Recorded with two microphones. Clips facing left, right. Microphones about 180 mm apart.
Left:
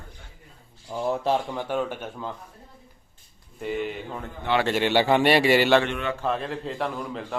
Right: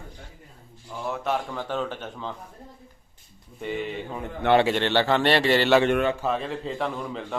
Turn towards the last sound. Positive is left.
turn(degrees=0)  # may be behind; listen again after turning